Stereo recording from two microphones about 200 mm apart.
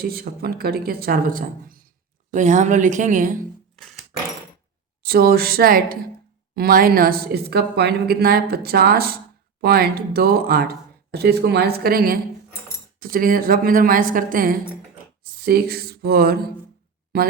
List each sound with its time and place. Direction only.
0.0 s a woman's voice: 50° right (ahead or behind)
5.0 s speech: 50° right (ahead or behind)